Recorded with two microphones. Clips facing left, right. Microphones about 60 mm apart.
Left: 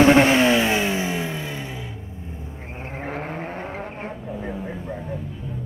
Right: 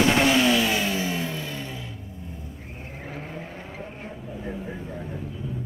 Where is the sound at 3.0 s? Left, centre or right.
Left.